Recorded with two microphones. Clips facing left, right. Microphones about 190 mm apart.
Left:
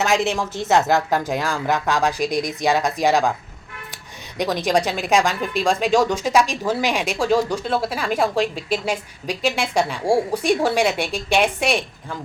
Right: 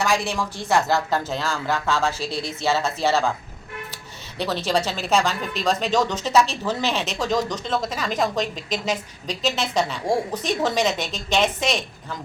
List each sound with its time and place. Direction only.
0.0 s a woman's voice: 20° left (ahead or behind)